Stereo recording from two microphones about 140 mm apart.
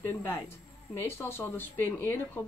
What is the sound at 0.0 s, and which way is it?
A woman's voice, 20° left (ahead or behind).